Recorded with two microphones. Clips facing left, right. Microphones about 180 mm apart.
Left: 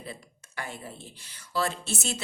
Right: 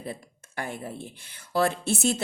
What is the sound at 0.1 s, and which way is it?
A woman's voice, 50° right (ahead or behind).